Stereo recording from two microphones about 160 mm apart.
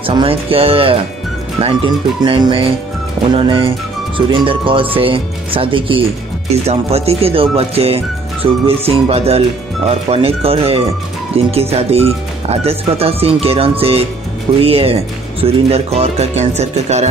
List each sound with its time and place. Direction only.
0.0 s speech: 35° right (ahead or behind)